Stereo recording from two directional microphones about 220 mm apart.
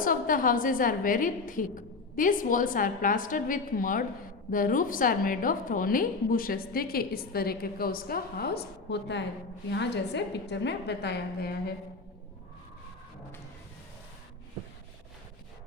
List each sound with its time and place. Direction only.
0.0 s a woman's voice: 40° left (ahead or behind)